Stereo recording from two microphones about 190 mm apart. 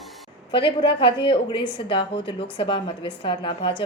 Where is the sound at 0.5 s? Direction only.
25° left (ahead or behind).